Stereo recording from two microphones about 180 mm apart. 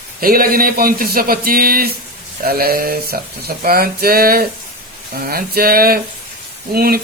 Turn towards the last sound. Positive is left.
turn(degrees=-55)  # may be behind; listen again after turning